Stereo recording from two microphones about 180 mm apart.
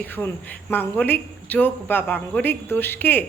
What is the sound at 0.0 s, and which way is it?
A man's voice, 10° left (ahead or behind).